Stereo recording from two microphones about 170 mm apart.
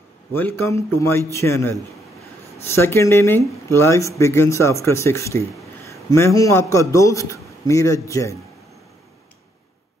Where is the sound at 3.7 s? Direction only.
15° left (ahead or behind).